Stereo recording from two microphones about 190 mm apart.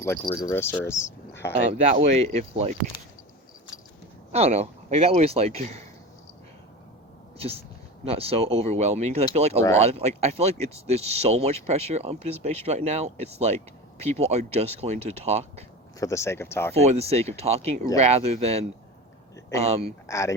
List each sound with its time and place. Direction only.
0.0 s speech: 15° left (ahead or behind)
1.8 s speech: 35° right (ahead or behind)
4.3 s speech: 35° right (ahead or behind)
7.3 s speech: 30° right (ahead or behind)
16.0 s speech: 15° left (ahead or behind)
16.8 s speech: 35° right (ahead or behind)
20.1 s speech: 15° left (ahead or behind)